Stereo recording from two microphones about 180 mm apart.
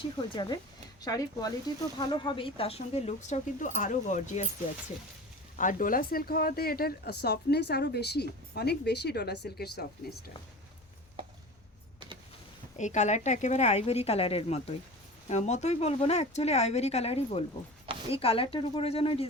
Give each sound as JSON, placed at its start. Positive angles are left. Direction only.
{"t": 0.3, "sound": "speech", "side_deg": 25}
{"t": 5.5, "sound": "speech", "side_deg": 45}
{"t": 12.7, "sound": "speech", "side_deg": 40}